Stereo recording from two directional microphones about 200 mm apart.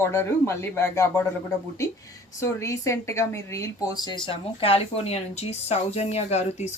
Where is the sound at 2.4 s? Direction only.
15° left (ahead or behind).